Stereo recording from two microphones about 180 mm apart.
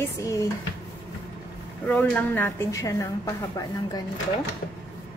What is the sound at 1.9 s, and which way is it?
A woman's voice, 10° left (ahead or behind).